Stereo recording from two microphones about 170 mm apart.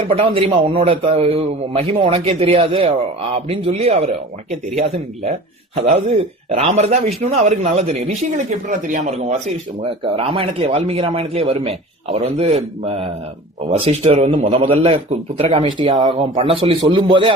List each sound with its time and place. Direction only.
0.1 s a man's voice: 35° right (ahead or behind)
9.8 s a man's voice: 30° right (ahead or behind)